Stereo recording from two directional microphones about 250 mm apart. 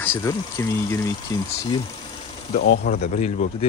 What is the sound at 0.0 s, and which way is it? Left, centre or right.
Speech, centre.